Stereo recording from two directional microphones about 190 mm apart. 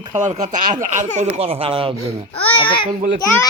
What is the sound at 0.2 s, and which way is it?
A man's voice, 40° right (ahead or behind).